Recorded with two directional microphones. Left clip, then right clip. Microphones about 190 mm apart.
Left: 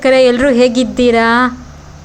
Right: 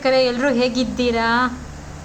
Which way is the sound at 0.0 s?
30° left (ahead or behind).